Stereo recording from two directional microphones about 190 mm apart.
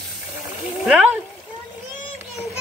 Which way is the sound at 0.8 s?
5° right (ahead or behind).